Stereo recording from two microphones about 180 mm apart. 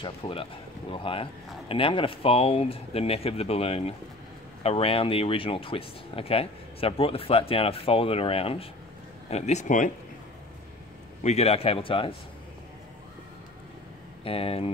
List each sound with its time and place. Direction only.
0.0 s speech: 30° left (ahead or behind)
11.2 s speech: 35° left (ahead or behind)
14.2 s speech: 30° left (ahead or behind)